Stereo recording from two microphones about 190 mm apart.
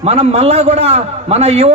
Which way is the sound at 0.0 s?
35° right (ahead or behind).